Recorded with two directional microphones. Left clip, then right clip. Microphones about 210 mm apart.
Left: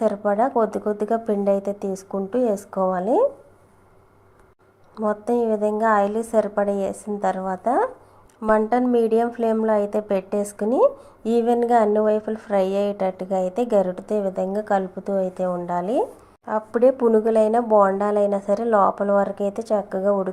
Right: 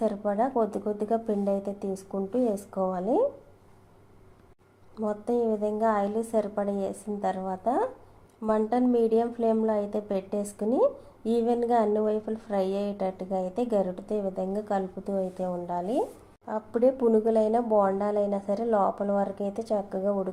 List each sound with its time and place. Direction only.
0.0 s a woman's voice: 20° left (ahead or behind)
4.9 s a woman's voice: 20° left (ahead or behind)